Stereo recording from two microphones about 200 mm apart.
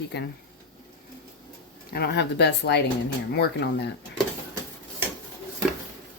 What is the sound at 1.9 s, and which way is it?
Speech, 55° left (ahead or behind).